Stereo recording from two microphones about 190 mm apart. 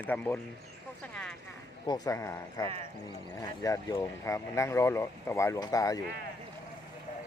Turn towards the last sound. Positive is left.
turn(degrees=20)  # may be behind; listen again after turning